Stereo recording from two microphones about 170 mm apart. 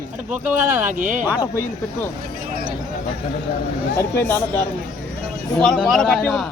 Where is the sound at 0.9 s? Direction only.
45° right (ahead or behind).